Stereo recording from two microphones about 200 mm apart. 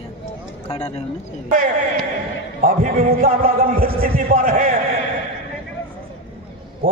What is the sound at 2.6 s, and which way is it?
A man's voice, 45° right (ahead or behind).